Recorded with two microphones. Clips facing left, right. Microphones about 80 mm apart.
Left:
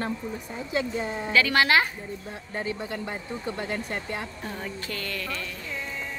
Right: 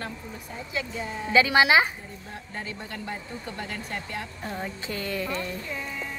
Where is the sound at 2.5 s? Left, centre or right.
Left.